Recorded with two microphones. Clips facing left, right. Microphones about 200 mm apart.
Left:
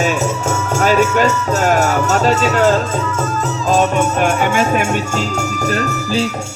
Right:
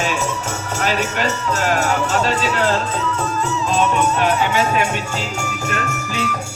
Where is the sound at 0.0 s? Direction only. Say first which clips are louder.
Left 5 dB; 45° left (ahead or behind).